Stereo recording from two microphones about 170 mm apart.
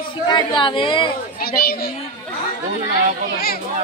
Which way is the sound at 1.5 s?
65° left (ahead or behind).